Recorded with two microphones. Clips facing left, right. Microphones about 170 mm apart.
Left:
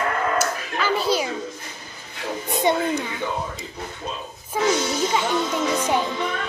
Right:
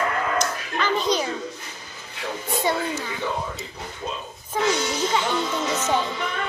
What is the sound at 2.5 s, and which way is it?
Speech, 20° left (ahead or behind).